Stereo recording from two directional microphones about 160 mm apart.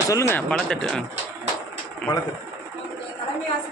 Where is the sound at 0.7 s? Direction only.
5° left (ahead or behind).